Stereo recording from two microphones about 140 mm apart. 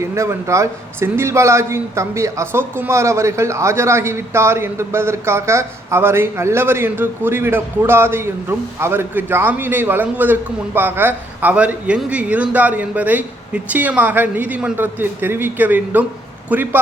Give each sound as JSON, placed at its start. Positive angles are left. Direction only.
{"t": 0.0, "sound": "a man's voice", "side_deg": -20}